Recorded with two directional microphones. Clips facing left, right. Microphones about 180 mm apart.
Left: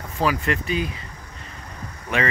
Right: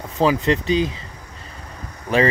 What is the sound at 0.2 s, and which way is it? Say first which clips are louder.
Speech: right 5 dB; 25° right (ahead or behind).